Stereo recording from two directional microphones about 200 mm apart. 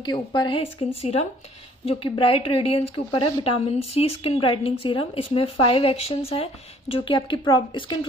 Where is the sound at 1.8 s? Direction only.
25° left (ahead or behind).